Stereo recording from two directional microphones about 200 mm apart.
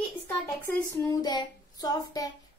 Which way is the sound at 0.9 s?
15° left (ahead or behind).